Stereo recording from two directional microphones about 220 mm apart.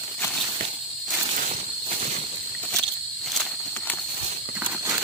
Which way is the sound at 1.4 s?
35° right (ahead or behind).